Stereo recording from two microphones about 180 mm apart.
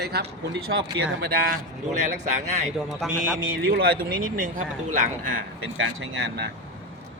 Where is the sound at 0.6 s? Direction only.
90° right.